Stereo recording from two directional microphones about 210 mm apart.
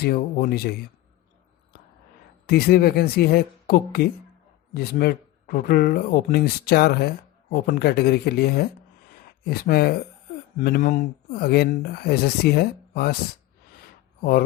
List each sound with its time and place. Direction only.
0.0 s speech: 45° left (ahead or behind)
2.5 s speech: 45° left (ahead or behind)
14.2 s speech: 45° left (ahead or behind)